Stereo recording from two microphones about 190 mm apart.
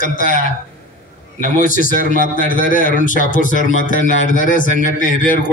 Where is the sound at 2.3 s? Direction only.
45° left (ahead or behind).